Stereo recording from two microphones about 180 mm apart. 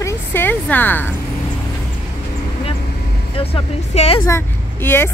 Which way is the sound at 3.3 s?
30° left (ahead or behind).